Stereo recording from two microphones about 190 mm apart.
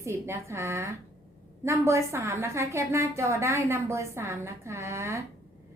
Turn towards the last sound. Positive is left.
turn(degrees=-15)  # may be behind; listen again after turning